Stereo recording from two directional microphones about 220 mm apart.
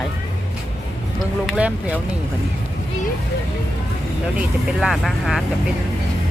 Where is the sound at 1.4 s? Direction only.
5° right (ahead or behind).